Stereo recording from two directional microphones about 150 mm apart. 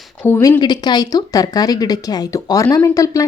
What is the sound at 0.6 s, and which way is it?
A woman's voice, 30° left (ahead or behind).